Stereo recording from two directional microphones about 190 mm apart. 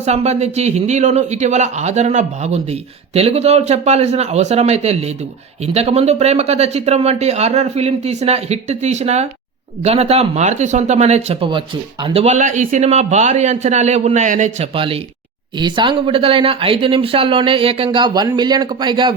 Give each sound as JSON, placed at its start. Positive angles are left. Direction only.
{"t": 0.0, "sound": "speech", "side_deg": -35}
{"t": 15.5, "sound": "speech", "side_deg": -25}